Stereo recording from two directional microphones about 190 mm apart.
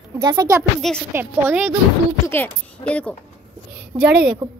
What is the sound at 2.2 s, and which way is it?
Speech, 10° left (ahead or behind).